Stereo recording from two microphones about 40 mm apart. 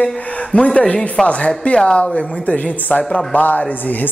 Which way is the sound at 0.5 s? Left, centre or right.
Left.